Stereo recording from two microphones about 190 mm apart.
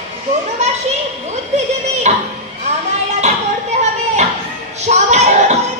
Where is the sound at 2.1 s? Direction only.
35° right (ahead or behind).